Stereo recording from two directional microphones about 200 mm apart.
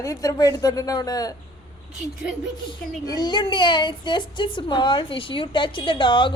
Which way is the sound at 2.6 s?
20° left (ahead or behind).